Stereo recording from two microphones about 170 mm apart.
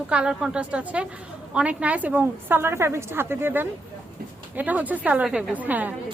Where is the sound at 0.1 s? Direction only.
5° right (ahead or behind).